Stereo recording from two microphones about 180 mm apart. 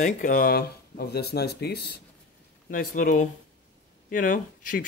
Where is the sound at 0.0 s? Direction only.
45° left (ahead or behind); by 1.8 s 65° left (ahead or behind).